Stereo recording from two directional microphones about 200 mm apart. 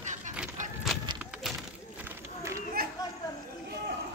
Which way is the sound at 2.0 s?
15° right (ahead or behind).